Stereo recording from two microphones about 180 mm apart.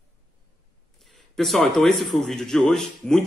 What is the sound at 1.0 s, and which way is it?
Speech, centre (ahead or behind).